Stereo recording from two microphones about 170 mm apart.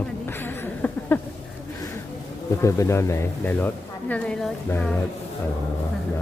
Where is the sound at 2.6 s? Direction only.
15° left (ahead or behind).